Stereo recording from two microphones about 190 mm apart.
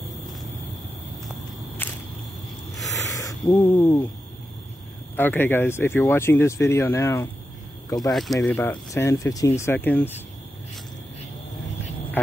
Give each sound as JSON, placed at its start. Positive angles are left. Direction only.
{"t": 1.8, "sound": "a sound", "side_deg": 10}
{"t": 2.9, "sound": "hiss", "side_deg": 15}
{"t": 5.1, "sound": "speech", "side_deg": 10}
{"t": 8.1, "sound": "speech", "side_deg": 0}
{"t": 8.4, "sound": "speech", "side_deg": 15}